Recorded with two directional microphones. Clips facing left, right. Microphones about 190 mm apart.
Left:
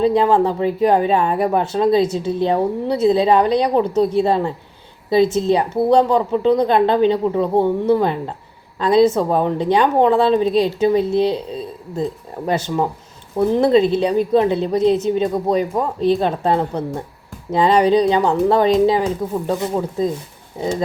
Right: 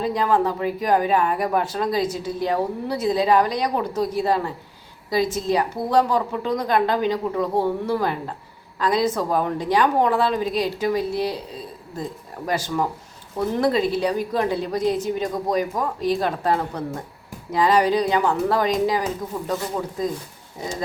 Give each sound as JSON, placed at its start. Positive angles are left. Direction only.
{"t": 0.0, "sound": "speech", "side_deg": 25}